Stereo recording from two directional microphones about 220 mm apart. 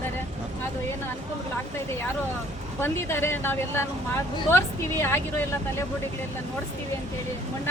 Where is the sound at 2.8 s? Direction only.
10° left (ahead or behind).